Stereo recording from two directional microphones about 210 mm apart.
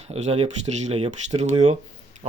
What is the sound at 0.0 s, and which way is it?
Speech, 30° right (ahead or behind).